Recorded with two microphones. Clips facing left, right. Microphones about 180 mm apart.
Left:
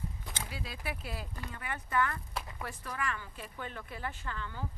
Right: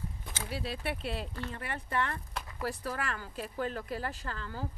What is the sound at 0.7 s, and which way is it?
Speech, 30° right (ahead or behind).